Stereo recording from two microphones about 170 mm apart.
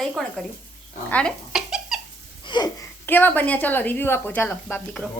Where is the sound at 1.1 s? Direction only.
5° left (ahead or behind).